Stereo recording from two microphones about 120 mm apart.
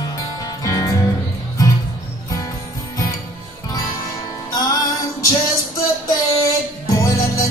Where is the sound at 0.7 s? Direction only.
30° left (ahead or behind).